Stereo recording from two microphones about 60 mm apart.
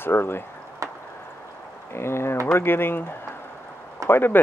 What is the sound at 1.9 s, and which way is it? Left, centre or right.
Speech, left.